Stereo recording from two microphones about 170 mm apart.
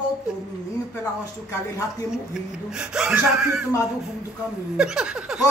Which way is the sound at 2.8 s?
5° right (ahead or behind).